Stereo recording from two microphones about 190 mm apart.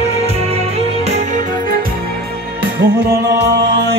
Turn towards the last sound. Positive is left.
turn(degrees=-60)  # may be behind; listen again after turning